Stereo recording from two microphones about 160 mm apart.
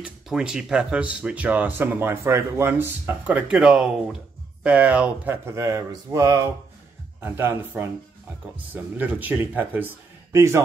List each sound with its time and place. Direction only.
0.0 s speech: 5° right (ahead or behind)